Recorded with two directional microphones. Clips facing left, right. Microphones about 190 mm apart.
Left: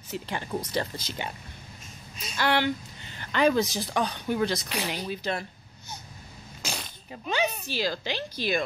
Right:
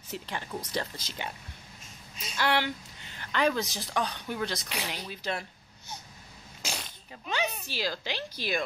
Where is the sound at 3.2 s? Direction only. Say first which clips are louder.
Left 4 dB; 5° left (ahead or behind).